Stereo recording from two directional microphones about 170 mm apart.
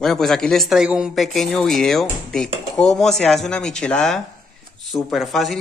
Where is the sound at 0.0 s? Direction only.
Centre (ahead or behind).